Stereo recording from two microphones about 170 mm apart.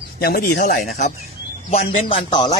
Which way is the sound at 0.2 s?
65° left (ahead or behind).